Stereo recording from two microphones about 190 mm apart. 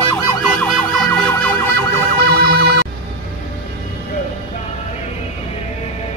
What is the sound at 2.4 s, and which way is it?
Ambulance, 60° right (ahead or behind).